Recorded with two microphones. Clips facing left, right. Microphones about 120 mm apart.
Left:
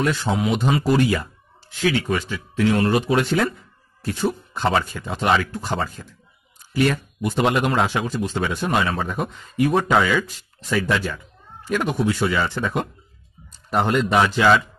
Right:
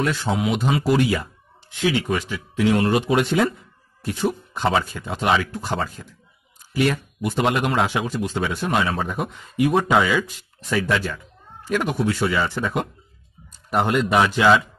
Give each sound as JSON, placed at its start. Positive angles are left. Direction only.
{"t": 0.0, "sound": "speech", "side_deg": 0}